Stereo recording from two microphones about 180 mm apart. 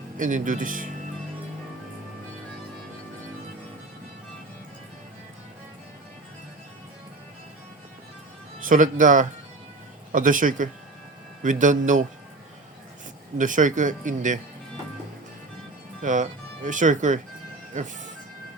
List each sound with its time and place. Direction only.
0.2 s speech: 45° right (ahead or behind)
8.6 s speech: 45° right (ahead or behind)
13.4 s speech: 45° right (ahead or behind)
16.0 s speech: 45° right (ahead or behind)